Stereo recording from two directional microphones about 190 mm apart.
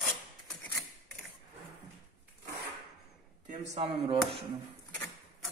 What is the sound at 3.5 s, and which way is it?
Speech, 30° right (ahead or behind).